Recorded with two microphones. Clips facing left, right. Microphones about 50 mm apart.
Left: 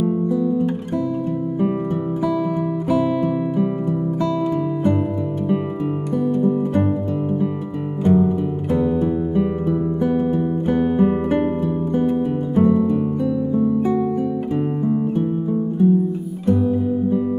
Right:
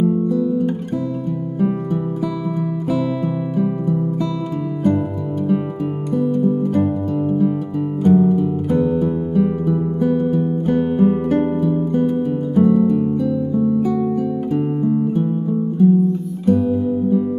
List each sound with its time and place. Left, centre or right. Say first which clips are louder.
0.0 s guitar: right 2 dB; centre
2.9 s music: left 2 dB; left
8.1 s music: right 2 dB; centre
10.1 s music: right 1 dB; centre
15.8 s music: right 3 dB; centre